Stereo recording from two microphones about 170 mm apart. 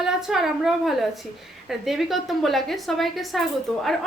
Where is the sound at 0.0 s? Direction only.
Centre (ahead or behind).